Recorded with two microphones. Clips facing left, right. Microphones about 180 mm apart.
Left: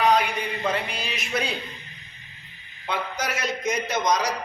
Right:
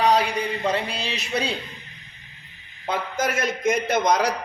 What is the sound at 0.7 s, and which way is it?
Speech, 30° right (ahead or behind).